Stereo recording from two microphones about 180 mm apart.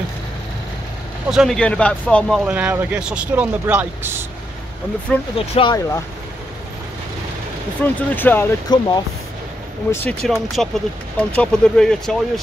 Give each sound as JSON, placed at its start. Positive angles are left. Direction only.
{"t": 1.3, "sound": "speech", "side_deg": 0}
{"t": 5.1, "sound": "speech", "side_deg": 5}
{"t": 5.5, "sound": "speech", "side_deg": 30}
{"t": 7.8, "sound": "speech", "side_deg": 10}
{"t": 8.7, "sound": "speech", "side_deg": 25}
{"t": 9.8, "sound": "speech", "side_deg": 5}